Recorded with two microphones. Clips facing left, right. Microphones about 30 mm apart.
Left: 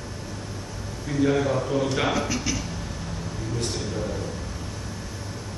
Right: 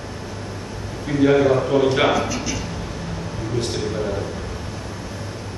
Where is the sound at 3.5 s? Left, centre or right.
Right.